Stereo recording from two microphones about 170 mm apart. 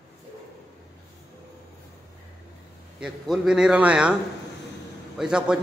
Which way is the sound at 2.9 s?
5° right (ahead or behind).